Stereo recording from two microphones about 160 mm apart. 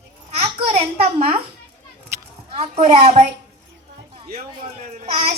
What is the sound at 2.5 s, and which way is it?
Speech, 35° right (ahead or behind).